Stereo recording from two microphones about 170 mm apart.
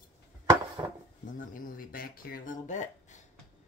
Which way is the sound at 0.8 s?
25° right (ahead or behind).